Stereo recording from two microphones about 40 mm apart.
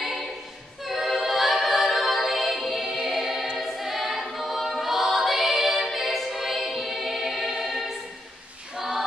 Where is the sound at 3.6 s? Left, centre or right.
Centre.